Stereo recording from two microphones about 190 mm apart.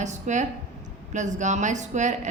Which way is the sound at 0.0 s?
40° right (ahead or behind).